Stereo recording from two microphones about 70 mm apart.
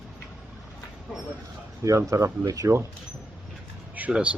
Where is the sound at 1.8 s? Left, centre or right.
Right.